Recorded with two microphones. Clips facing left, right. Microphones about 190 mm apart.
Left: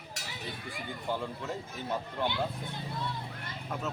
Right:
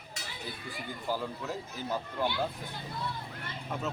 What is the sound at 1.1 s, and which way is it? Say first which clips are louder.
Speech: right 1 dB; centre (ahead or behind).